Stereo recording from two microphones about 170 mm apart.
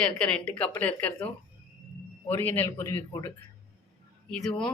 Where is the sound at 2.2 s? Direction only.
10° left (ahead or behind).